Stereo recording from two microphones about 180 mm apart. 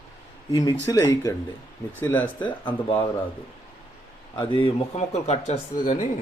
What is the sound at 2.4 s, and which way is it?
Speech, 25° left (ahead or behind).